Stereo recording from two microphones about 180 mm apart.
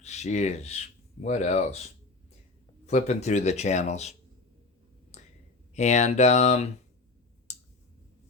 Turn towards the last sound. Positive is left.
turn(degrees=40)  # may be behind; listen again after turning